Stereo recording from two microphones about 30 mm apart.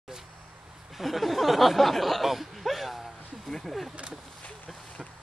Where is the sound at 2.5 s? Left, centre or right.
Centre.